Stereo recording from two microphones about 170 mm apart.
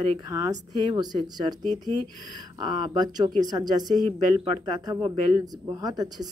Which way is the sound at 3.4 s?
25° right (ahead or behind).